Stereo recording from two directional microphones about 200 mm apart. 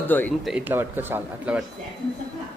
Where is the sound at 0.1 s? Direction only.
10° left (ahead or behind).